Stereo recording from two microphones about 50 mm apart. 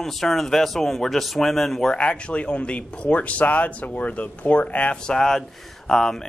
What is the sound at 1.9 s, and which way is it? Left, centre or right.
Speech, left.